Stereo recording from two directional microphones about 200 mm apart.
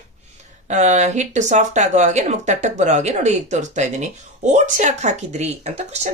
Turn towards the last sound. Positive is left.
turn(degrees=-35)  # may be behind; listen again after turning